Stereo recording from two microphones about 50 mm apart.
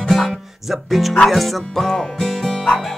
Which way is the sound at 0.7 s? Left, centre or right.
Centre.